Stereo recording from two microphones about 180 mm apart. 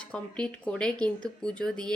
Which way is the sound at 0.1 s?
5° left (ahead or behind).